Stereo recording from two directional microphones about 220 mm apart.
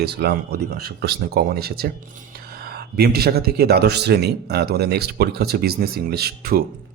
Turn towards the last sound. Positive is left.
turn(degrees=-45)  # may be behind; listen again after turning